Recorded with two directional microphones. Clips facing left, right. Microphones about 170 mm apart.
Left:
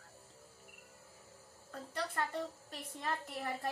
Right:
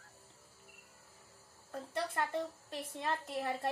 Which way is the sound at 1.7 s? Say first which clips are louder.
Right 3 dB; 20° right (ahead or behind).